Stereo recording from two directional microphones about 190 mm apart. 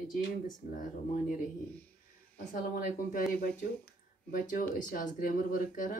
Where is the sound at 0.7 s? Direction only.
45° left (ahead or behind).